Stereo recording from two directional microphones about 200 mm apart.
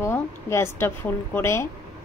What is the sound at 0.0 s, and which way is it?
A woman's voice, 10° left (ahead or behind).